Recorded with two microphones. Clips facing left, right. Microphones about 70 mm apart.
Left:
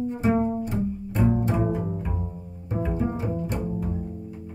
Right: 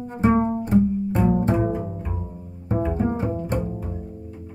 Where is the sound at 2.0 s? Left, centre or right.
Centre.